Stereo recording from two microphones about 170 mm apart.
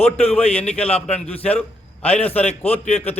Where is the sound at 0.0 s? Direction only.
40° left (ahead or behind).